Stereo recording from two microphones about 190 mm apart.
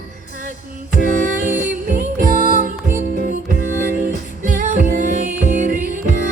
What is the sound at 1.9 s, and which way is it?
Music, 45° right (ahead or behind).